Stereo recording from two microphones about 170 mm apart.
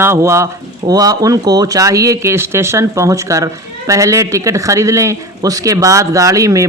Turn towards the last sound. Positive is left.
turn(degrees=-20)  # may be behind; listen again after turning